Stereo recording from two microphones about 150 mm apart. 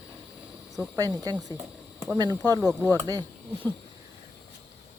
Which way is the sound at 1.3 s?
25° right (ahead or behind).